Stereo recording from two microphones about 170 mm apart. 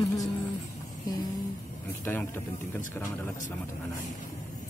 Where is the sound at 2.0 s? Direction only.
15° left (ahead or behind).